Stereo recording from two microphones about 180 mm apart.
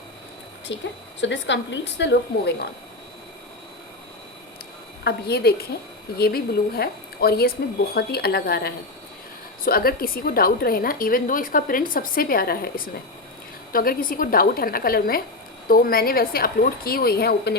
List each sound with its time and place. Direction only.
0.7 s a woman's voice: 90° left; by 2.6 s 70° left (ahead or behind)
5.0 s a woman's voice: 65° left (ahead or behind)